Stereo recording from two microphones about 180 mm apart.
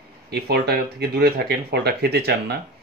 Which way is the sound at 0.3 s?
65° right (ahead or behind).